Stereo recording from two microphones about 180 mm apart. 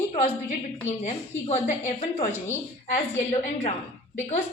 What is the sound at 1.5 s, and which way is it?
Speech, 40° left (ahead or behind).